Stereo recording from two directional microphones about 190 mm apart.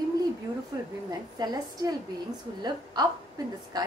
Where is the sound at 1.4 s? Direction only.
20° right (ahead or behind).